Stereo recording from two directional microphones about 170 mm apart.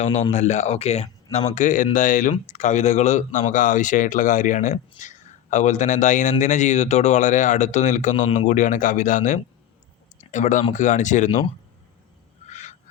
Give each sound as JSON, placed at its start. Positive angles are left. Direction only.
{"t": 0.0, "sound": "speech", "side_deg": 40}
{"t": 12.5, "sound": "goose", "side_deg": 45}